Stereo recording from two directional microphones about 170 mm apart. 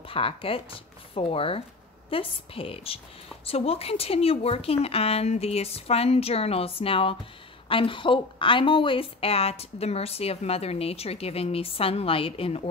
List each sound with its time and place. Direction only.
0.1 s speech: 30° left (ahead or behind)